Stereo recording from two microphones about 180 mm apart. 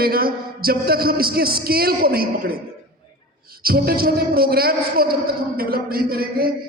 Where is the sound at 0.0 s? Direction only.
55° right (ahead or behind).